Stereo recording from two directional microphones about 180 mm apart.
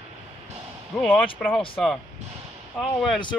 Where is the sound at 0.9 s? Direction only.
Centre (ahead or behind).